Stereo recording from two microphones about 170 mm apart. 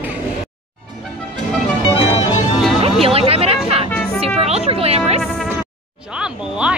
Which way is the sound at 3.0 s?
35° right (ahead or behind).